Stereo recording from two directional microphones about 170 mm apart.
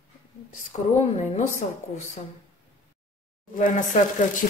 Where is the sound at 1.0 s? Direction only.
45° left (ahead or behind).